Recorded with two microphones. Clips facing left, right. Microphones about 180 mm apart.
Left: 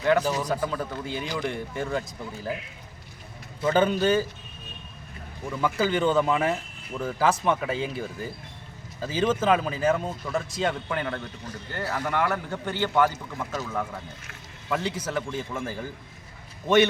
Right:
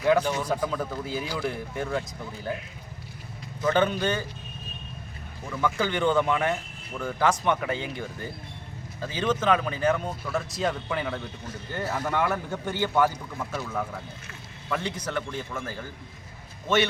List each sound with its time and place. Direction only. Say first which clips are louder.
0.2 s speech: even; 5° left (ahead or behind)
3.6 s speech: left 2 dB; 10° left (ahead or behind)
5.6 s speech: left 1 dB; 5° left (ahead or behind)
11.7 s a man's voice: even; 15° right (ahead or behind)
14.7 s speech: left 2 dB; 5° left (ahead or behind)